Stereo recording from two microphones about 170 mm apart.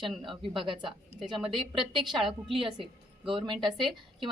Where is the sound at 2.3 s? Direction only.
30° right (ahead or behind).